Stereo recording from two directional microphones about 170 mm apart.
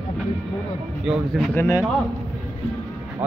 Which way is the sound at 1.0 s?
5° right (ahead or behind).